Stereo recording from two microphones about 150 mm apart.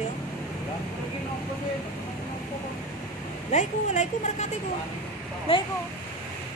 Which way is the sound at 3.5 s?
50° left (ahead or behind).